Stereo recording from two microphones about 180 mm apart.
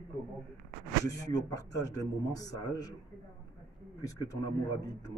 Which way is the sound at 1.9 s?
20° left (ahead or behind).